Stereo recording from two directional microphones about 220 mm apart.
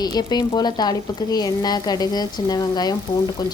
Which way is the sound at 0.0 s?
20° left (ahead or behind).